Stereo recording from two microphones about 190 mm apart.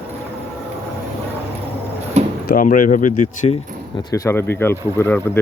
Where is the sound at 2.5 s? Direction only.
45° left (ahead or behind).